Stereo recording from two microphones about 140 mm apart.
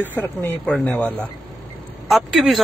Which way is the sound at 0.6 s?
10° left (ahead or behind).